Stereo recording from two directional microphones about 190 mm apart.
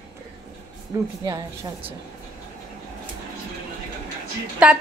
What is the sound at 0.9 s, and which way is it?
Speech, 15° right (ahead or behind).